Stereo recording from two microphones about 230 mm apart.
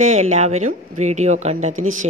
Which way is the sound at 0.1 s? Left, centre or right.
Right.